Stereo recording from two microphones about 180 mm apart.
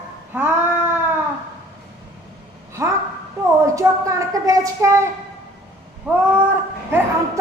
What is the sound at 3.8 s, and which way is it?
A woman's voice, 20° right (ahead or behind).